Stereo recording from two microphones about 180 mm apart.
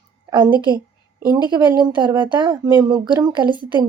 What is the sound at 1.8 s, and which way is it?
Speech, 25° right (ahead or behind).